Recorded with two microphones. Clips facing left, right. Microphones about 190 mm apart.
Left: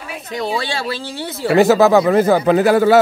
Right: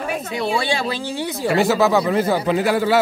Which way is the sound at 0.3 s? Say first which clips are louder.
Left 1 dB; 10° right (ahead or behind).